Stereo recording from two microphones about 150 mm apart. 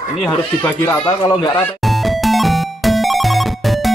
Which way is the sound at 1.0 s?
30° left (ahead or behind).